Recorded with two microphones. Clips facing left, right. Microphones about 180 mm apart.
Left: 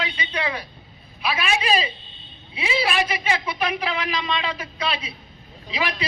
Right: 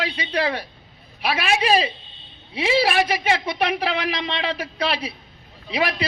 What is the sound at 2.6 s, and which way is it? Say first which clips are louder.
A man's voice: right 4 dB; 65° right (ahead or behind).